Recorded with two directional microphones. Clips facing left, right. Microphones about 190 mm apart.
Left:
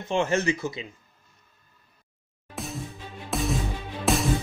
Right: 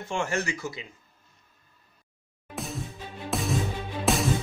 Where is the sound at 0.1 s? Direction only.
20° left (ahead or behind).